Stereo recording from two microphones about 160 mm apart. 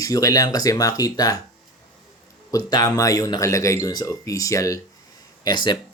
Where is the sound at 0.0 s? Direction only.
20° left (ahead or behind).